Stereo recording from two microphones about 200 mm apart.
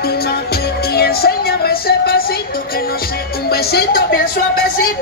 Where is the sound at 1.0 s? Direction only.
50° left (ahead or behind).